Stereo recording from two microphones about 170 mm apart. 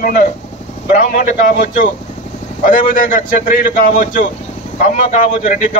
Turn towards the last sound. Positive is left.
turn(degrees=50)  # may be behind; listen again after turning